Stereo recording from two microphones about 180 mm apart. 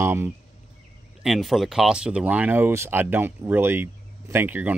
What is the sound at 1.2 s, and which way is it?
Speech, centre (ahead or behind).